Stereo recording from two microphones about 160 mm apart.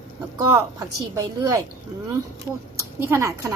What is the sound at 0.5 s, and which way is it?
Speech, 20° right (ahead or behind).